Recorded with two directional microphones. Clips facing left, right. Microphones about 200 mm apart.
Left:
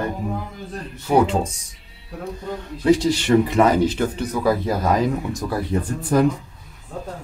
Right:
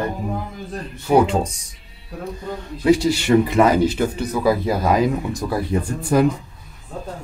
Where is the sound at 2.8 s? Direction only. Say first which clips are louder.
Right 1 dB; 10° right (ahead or behind).